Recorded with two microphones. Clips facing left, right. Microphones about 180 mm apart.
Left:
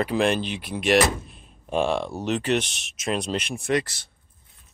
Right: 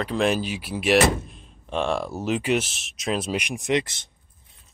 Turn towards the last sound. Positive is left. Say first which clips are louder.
# right 1 dB
turn(degrees=-20)  # may be behind; listen again after turning